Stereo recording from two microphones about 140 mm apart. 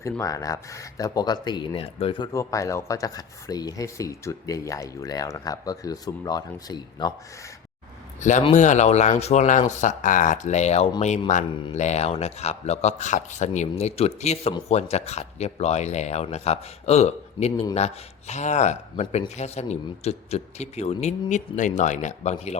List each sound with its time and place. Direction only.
0.0 s speech: 25° left (ahead or behind)
2.3 s speech: 25° left (ahead or behind)
8.2 s speech: 60° left (ahead or behind)